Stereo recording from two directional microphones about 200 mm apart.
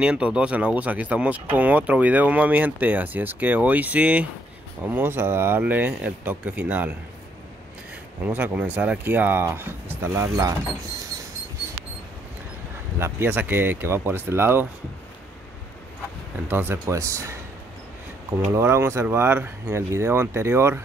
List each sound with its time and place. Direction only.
0.0 s speech: 5° right (ahead or behind)
8.3 s speech: 10° right (ahead or behind)
13.0 s speech: 10° right (ahead or behind)
16.4 s speech: 10° right (ahead or behind)
18.5 s speech: 15° right (ahead or behind)